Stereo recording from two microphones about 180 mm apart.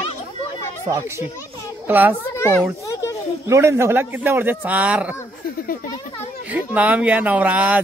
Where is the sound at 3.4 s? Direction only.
15° right (ahead or behind).